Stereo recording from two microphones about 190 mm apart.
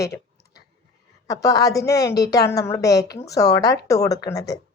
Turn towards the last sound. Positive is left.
turn(degrees=20)  # may be behind; listen again after turning